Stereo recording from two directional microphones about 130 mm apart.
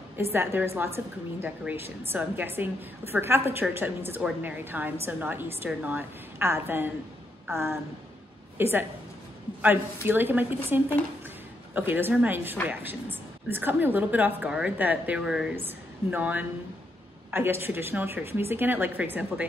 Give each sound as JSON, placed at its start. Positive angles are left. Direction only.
{"t": 0.2, "sound": "a woman's voice", "side_deg": -20}
{"t": 15.5, "sound": "a woman's voice", "side_deg": -15}